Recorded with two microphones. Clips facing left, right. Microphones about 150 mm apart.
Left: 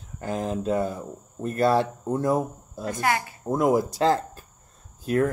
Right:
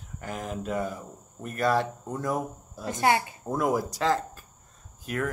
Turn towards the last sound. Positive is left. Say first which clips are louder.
# left 8 dB
turn(degrees=30)  # may be behind; listen again after turning